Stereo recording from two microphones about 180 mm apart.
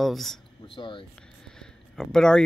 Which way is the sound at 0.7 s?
30° left (ahead or behind).